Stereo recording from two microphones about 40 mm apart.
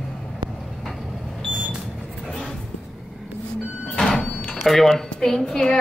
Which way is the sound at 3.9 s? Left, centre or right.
Centre.